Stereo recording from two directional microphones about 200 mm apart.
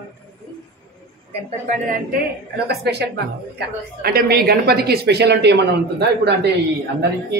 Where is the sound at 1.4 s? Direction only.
35° right (ahead or behind).